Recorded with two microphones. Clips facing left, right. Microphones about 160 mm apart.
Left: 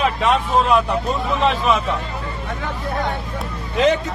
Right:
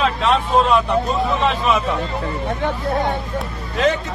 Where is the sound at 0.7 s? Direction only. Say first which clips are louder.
Even; 10° left (ahead or behind).